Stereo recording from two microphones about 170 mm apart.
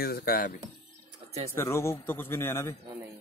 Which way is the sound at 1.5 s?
15° left (ahead or behind).